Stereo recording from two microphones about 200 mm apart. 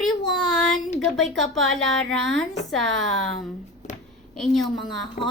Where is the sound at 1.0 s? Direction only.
Centre (ahead or behind).